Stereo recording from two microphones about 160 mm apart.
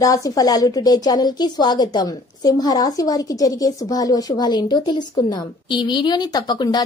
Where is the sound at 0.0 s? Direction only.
20° left (ahead or behind).